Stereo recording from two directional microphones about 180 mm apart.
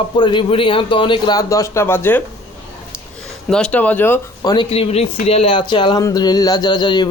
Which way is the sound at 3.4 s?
5° left (ahead or behind).